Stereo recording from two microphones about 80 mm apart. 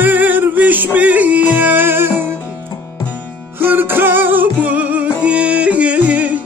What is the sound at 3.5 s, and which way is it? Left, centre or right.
Music, right.